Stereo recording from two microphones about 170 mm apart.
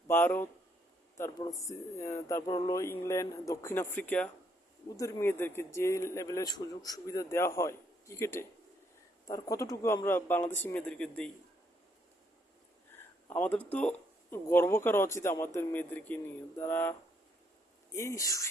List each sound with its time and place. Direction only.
0.1 s speech: 10° left (ahead or behind)
13.0 s speech: 10° left (ahead or behind)
17.9 s speech: 15° left (ahead or behind)